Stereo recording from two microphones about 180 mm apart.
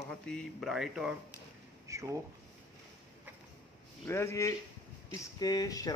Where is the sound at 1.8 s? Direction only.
15° right (ahead or behind).